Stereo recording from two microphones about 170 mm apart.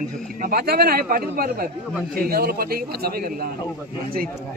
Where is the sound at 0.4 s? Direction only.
60° right (ahead or behind).